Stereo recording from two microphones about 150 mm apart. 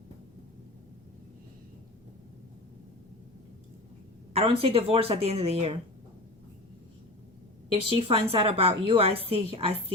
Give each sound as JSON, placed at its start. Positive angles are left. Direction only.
{"t": 4.4, "sound": "a woman's voice", "side_deg": -40}
{"t": 7.7, "sound": "a woman's voice", "side_deg": -40}